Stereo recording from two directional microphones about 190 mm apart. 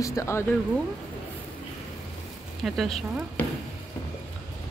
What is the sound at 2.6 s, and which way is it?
Speech, centre (ahead or behind).